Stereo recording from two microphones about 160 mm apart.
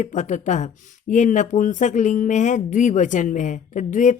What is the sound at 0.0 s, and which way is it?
Speech, 50° left (ahead or behind).